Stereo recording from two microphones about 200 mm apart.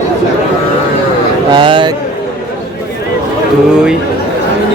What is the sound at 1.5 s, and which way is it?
Speech, 25° right (ahead or behind).